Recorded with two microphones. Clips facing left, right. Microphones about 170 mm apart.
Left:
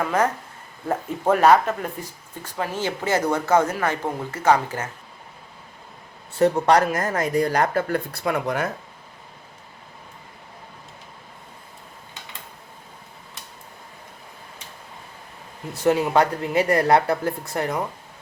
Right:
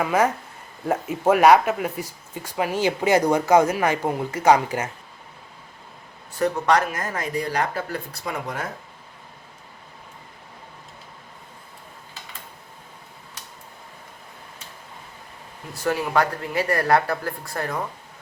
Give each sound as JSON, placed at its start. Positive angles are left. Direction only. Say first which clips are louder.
{"t": 0.0, "sound": "speech", "louder": "right 1 dB", "side_deg": -10}
{"t": 6.4, "sound": "speech", "louder": "left 3 dB", "side_deg": 35}
{"t": 15.7, "sound": "speech", "louder": "left 4 dB", "side_deg": 20}